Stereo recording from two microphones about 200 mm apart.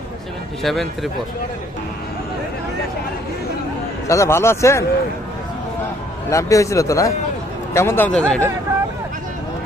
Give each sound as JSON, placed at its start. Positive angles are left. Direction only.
{"t": 0.6, "sound": "speech", "side_deg": 0}
{"t": 4.1, "sound": "speech", "side_deg": 15}
{"t": 6.3, "sound": "speech", "side_deg": 15}